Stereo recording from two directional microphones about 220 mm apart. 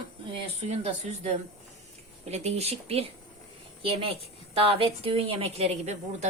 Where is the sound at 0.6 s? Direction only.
30° right (ahead or behind).